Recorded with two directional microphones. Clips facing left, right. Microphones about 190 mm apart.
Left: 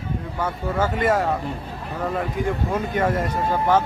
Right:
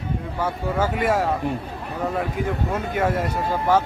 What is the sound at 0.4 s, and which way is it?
Speech, 10° right (ahead or behind).